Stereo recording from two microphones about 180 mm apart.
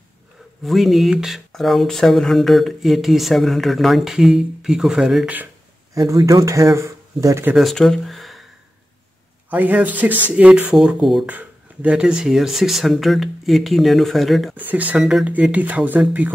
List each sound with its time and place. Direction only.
0.7 s speech: centre (ahead or behind)
5.9 s speech: 20° right (ahead or behind)
7.5 s speech: centre (ahead or behind)
9.5 s speech: 10° right (ahead or behind)